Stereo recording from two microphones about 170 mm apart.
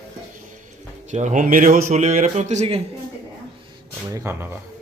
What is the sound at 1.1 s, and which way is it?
A man's voice, 45° right (ahead or behind).